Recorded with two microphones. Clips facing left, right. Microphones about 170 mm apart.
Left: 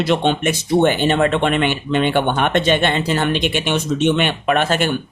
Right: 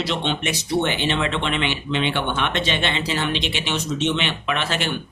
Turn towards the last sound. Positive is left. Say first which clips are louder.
# left 7 dB
turn(degrees=50)  # may be behind; listen again after turning